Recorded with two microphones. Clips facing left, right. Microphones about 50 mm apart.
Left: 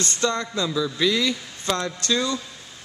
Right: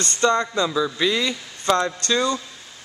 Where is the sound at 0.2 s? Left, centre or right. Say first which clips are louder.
Right 6 dB; right.